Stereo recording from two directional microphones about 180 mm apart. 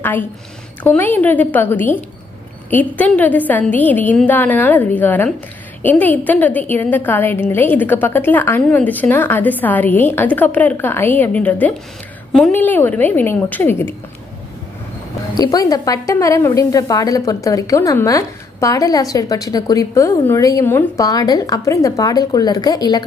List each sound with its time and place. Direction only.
0.8 s a woman's voice: 10° left (ahead or behind)
15.3 s speech: 20° left (ahead or behind)